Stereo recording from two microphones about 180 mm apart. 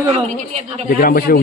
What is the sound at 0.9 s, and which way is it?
Speech, 55° left (ahead or behind).